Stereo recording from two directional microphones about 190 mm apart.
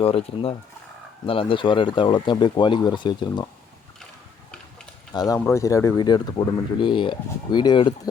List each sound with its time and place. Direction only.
0.0 s speech: 30° left (ahead or behind)
5.1 s speech: 20° left (ahead or behind)